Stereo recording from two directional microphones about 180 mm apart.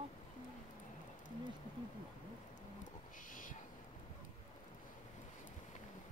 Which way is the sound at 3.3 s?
50° left (ahead or behind).